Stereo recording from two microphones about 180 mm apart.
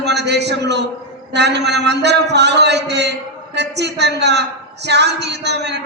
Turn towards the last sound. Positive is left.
turn(degrees=-70)  # may be behind; listen again after turning